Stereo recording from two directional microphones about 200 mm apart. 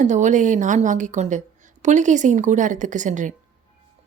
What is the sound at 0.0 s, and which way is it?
A woman's voice, 35° right (ahead or behind).